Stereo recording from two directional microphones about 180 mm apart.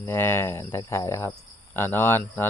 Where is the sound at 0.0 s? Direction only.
15° left (ahead or behind).